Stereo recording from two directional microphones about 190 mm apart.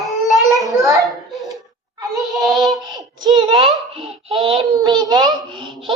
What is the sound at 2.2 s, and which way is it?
Child singing, centre (ahead or behind).